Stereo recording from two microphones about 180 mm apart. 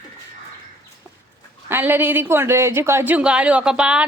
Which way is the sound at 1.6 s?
10° right (ahead or behind).